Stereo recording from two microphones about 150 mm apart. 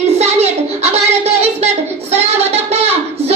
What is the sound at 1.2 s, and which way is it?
Child singing, 45° right (ahead or behind).